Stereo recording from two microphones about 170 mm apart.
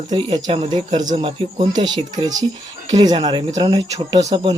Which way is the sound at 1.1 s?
30° right (ahead or behind).